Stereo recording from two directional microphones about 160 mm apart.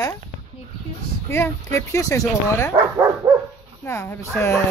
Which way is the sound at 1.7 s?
20° left (ahead or behind).